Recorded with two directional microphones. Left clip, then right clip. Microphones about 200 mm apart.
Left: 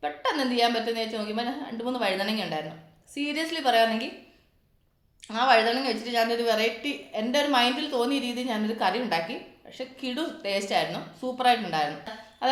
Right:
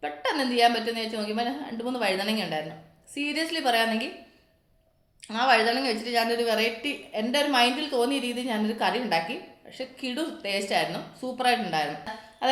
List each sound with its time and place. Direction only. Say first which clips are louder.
0.0 s a woman's voice: even; centre (ahead or behind)
5.2 s a woman's voice: left 1 dB; centre (ahead or behind)
12.4 s a sound: even; centre (ahead or behind)